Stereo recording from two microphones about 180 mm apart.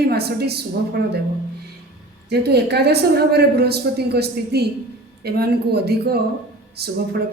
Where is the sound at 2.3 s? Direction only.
65° right (ahead or behind).